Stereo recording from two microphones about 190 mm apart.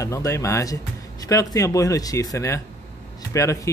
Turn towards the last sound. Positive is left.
turn(degrees=15)  # may be behind; listen again after turning